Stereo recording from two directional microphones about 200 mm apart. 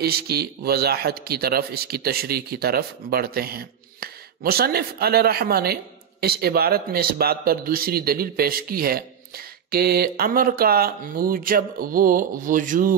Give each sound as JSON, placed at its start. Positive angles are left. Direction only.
{"t": 0.0, "sound": "a man's voice", "side_deg": -50}